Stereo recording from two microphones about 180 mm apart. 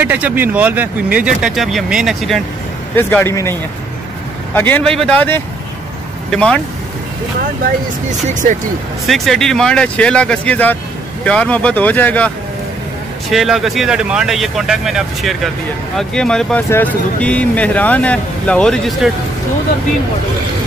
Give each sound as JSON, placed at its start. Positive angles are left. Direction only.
{"t": 0.0, "sound": "speech", "side_deg": -10}
{"t": 3.0, "sound": "speech", "side_deg": 10}
{"t": 4.6, "sound": "speech", "side_deg": 10}
{"t": 8.3, "sound": "speech", "side_deg": -45}
{"t": 9.0, "sound": "speech", "side_deg": 0}
{"t": 13.3, "sound": "speech", "side_deg": 0}